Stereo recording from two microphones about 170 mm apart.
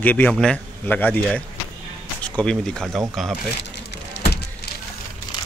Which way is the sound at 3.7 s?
75° left (ahead or behind).